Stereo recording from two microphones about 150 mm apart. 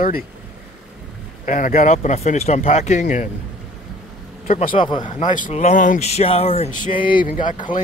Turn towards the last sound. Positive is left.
turn(degrees=60)  # may be behind; listen again after turning